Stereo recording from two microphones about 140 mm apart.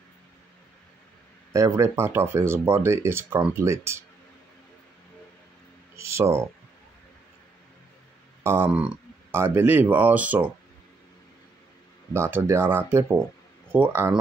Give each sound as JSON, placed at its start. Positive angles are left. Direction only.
{"t": 1.5, "sound": "speech", "side_deg": -20}
{"t": 5.9, "sound": "a sound", "side_deg": -20}
{"t": 8.5, "sound": "speech", "side_deg": -15}
{"t": 12.1, "sound": "speech", "side_deg": -15}